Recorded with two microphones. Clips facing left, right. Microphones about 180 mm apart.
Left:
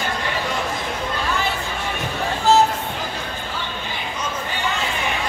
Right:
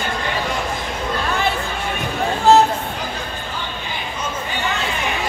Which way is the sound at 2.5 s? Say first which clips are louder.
Right 4 dB; 55° right (ahead or behind).